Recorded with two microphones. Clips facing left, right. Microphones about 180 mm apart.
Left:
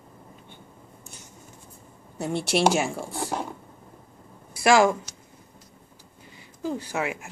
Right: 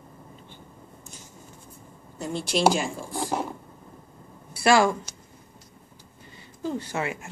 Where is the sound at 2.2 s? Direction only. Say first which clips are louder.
Left 2 dB; 65° left (ahead or behind).